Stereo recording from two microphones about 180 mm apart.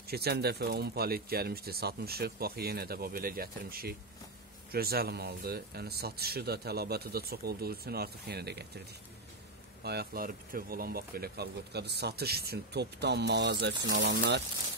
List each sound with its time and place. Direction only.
0.1 s speech: 60° right (ahead or behind)
9.8 s speech: 60° right (ahead or behind)